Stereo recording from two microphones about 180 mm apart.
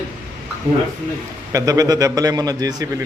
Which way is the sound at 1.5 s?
20° right (ahead or behind).